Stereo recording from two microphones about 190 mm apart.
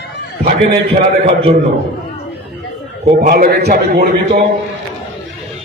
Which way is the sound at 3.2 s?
50° right (ahead or behind).